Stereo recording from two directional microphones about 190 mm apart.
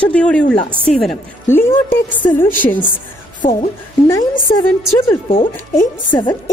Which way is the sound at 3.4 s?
40° left (ahead or behind).